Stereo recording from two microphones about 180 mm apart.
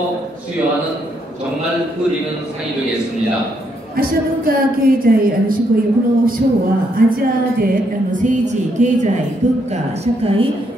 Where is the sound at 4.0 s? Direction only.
55° right (ahead or behind).